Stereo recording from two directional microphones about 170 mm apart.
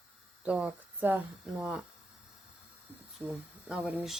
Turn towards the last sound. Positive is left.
turn(degrees=-5)  # may be behind; listen again after turning